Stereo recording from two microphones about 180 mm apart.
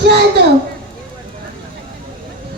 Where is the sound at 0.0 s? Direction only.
65° right (ahead or behind).